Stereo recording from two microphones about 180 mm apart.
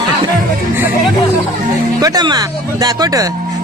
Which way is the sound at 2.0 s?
20° right (ahead or behind).